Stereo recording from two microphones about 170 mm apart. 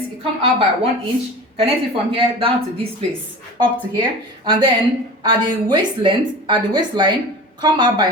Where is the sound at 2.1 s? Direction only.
30° right (ahead or behind).